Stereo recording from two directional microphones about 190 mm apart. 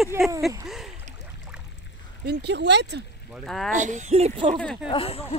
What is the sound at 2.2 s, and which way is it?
Speech, 60° right (ahead or behind).